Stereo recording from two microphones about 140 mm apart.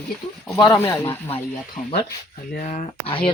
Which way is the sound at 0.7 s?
15° left (ahead or behind).